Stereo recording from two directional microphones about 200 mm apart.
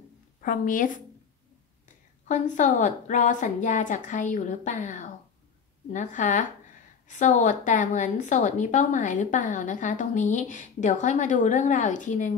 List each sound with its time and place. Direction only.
0.4 s a woman's voice: 40° left (ahead or behind)
2.2 s a woman's voice: 40° left (ahead or behind)